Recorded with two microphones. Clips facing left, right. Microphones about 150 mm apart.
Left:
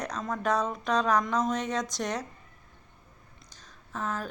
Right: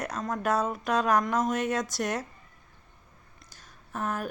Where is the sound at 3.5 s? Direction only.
10° right (ahead or behind).